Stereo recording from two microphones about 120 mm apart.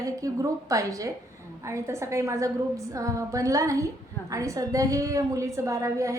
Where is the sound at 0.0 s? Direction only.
30° right (ahead or behind).